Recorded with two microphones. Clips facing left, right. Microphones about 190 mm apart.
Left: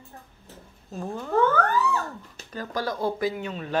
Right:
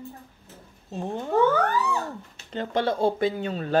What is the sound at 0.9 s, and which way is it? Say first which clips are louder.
Speech: right 1 dB; 25° right (ahead or behind).